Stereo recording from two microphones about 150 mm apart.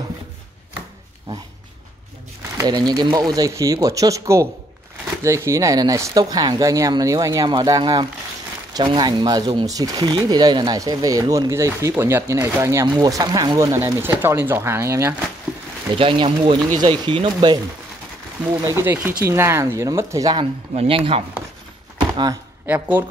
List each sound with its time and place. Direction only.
2.5 s speech: 25° right (ahead or behind)
16.0 s speech: 35° right (ahead or behind)
18.5 s speech: 15° right (ahead or behind)
20.7 s speech: 40° right (ahead or behind)
22.1 s speech: 25° right (ahead or behind)
22.7 s speech: 10° right (ahead or behind)